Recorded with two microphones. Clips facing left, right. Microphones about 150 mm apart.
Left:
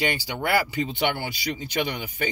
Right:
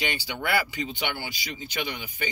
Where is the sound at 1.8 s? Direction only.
50° left (ahead or behind).